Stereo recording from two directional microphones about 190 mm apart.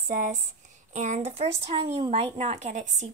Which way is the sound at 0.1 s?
40° right (ahead or behind).